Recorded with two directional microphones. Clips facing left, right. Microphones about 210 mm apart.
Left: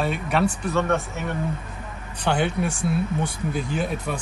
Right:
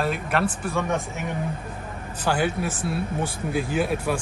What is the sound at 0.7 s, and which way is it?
Speech, 15° right (ahead or behind).